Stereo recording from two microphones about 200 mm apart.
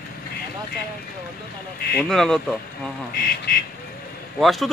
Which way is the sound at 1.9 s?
5° left (ahead or behind).